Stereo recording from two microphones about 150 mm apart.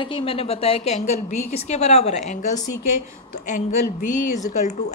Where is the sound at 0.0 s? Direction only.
35° left (ahead or behind).